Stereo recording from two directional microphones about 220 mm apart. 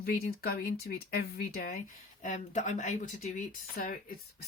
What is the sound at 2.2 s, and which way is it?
Speech, 35° left (ahead or behind).